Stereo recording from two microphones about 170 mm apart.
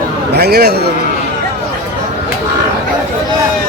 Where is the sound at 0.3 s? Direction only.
70° right (ahead or behind).